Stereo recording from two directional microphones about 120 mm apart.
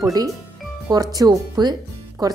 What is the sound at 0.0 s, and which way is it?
A woman's voice, 30° right (ahead or behind).